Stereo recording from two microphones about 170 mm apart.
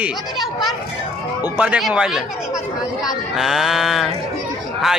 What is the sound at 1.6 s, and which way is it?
Speech, 5° right (ahead or behind).